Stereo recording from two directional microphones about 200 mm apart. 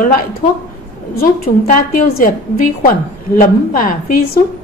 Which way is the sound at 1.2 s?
45° left (ahead or behind).